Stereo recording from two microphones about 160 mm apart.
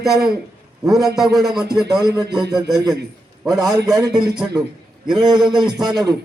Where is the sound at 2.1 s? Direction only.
25° right (ahead or behind).